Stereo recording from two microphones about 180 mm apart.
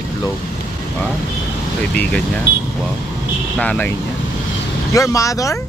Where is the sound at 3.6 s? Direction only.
10° left (ahead or behind).